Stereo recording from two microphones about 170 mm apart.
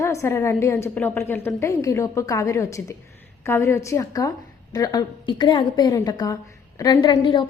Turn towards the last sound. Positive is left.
turn(degrees=30)  # may be behind; listen again after turning